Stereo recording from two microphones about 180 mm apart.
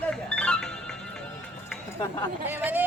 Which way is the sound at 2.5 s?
10° right (ahead or behind).